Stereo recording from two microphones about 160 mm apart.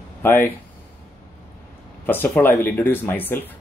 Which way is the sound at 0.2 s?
15° left (ahead or behind).